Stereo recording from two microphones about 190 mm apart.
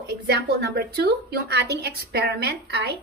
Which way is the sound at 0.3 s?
55° right (ahead or behind).